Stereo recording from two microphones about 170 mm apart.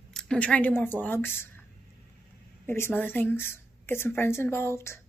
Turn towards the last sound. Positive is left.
turn(degrees=15)  # may be behind; listen again after turning